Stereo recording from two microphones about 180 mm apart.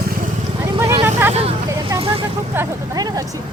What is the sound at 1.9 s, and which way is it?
Speech, 30° right (ahead or behind).